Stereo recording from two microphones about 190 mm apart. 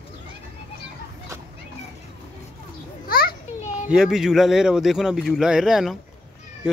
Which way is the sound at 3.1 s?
55° left (ahead or behind).